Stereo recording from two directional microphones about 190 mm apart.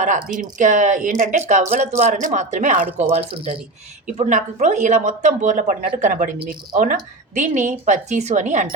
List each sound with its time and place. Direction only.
0.3 s speech: 40° right (ahead or behind)
4.0 s speech: 40° right (ahead or behind)
7.3 s speech: 40° right (ahead or behind)